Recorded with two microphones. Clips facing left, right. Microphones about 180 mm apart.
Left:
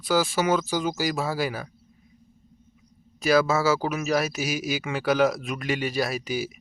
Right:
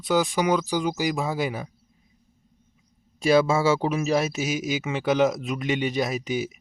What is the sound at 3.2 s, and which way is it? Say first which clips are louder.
Speech: right 2 dB; 25° right (ahead or behind).